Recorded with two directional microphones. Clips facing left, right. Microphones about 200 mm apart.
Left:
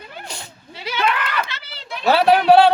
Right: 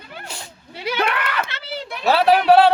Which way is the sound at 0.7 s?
55° right (ahead or behind).